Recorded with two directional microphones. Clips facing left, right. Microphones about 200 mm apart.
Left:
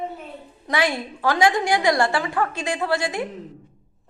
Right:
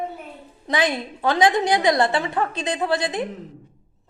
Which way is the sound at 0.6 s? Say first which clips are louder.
Right 1 dB; 20° right (ahead or behind).